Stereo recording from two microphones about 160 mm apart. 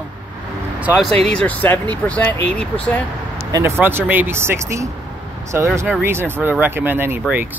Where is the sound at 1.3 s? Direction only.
10° left (ahead or behind).